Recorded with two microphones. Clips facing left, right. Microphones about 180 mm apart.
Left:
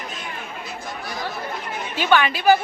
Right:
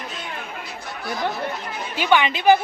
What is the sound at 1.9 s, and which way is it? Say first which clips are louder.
Speech: even; 15° right (ahead or behind).